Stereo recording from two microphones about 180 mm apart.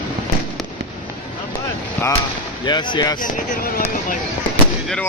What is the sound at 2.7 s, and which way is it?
Speech, 25° left (ahead or behind).